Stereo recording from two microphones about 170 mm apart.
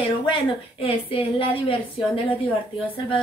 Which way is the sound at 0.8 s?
35° left (ahead or behind).